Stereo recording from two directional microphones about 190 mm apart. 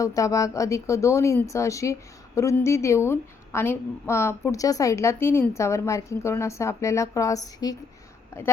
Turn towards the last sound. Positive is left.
turn(degrees=20)  # may be behind; listen again after turning